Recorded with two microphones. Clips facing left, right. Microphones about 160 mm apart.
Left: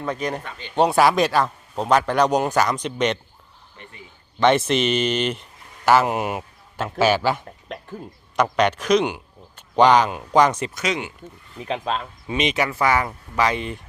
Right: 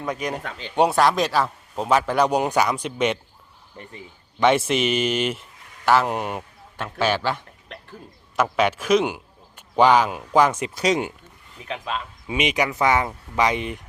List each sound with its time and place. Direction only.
0.0 s a man's voice: 10° right (ahead or behind)
0.9 s a man's voice: centre (ahead or behind)
4.4 s speech: 10° right (ahead or behind); by 7.4 s 10° left (ahead or behind)
8.5 s speech: 5° right (ahead or behind)
10.8 s speech: 40° right (ahead or behind)
11.6 s speech: 35° left (ahead or behind)
12.3 s speech: 10° right (ahead or behind)